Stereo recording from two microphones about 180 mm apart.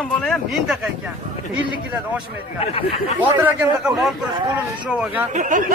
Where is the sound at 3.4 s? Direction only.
Centre (ahead or behind).